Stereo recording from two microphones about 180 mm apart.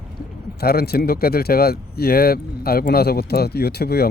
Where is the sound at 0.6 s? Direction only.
60° left (ahead or behind).